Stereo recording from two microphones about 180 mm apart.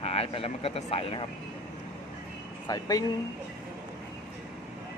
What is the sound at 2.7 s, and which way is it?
Speech, 20° left (ahead or behind).